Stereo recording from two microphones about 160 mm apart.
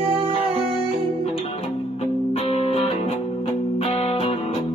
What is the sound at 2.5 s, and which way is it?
Music, 40° left (ahead or behind).